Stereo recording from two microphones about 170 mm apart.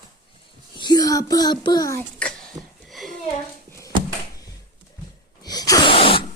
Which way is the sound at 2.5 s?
20° right (ahead or behind).